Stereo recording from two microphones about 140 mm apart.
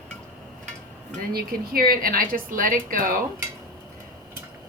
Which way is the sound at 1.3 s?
90° right.